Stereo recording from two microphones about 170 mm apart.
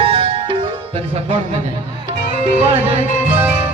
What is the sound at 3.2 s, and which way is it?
Music, 10° right (ahead or behind).